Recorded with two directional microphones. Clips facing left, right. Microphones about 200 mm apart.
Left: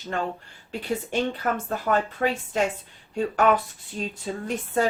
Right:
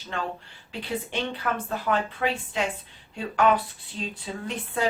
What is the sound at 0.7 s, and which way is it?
Speech, 45° left (ahead or behind).